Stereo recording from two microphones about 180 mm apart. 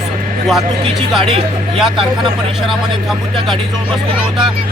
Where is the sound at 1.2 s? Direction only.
30° right (ahead or behind).